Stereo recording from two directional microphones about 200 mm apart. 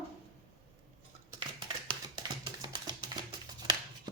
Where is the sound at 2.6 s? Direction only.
20° right (ahead or behind).